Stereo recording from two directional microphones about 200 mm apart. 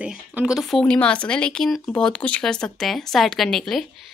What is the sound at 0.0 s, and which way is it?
A woman's voice, 5° right (ahead or behind).